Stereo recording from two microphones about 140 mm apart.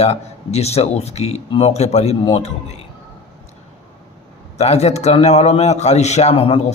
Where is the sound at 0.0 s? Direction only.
50° left (ahead or behind).